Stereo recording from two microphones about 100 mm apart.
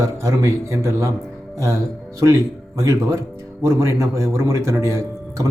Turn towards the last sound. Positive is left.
turn(degrees=-30)  # may be behind; listen again after turning